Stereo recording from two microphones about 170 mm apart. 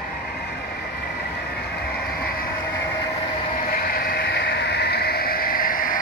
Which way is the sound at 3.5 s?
55° left (ahead or behind).